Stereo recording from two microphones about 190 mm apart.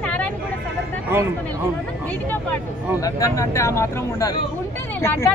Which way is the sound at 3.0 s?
15° left (ahead or behind).